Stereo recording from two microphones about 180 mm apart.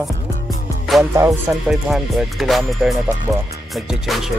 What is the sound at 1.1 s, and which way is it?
Music, 15° right (ahead or behind).